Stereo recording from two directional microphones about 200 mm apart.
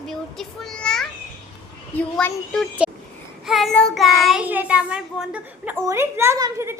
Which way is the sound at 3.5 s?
Centre (ahead or behind).